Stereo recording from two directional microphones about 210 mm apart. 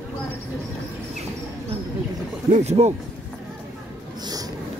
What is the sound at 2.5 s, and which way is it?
Speech, 30° right (ahead or behind).